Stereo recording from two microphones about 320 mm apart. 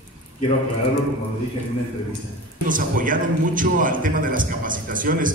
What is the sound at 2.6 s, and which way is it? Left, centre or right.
A man's voice, right.